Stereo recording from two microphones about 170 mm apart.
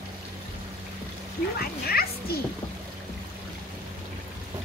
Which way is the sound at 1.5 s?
65° left (ahead or behind).